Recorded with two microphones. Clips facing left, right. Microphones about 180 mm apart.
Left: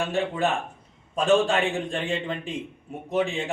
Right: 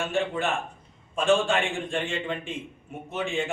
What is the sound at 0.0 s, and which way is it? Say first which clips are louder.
A man's voice: left 2 dB; 35° left (ahead or behind).